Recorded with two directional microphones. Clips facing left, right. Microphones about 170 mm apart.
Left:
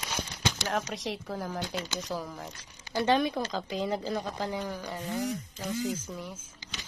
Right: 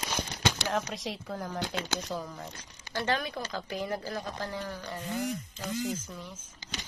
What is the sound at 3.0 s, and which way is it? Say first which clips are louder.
A woman's voice: left 5 dB; 20° left (ahead or behind).